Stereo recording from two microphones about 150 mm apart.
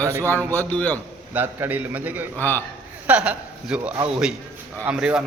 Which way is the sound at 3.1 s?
10° right (ahead or behind).